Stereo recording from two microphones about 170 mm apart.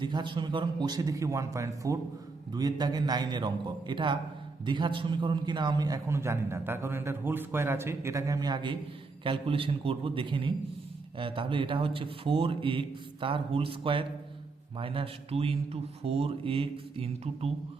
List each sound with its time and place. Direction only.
0.0 s a man's voice: 25° right (ahead or behind)